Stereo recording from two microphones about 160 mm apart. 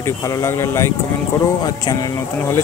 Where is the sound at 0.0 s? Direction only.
20° left (ahead or behind).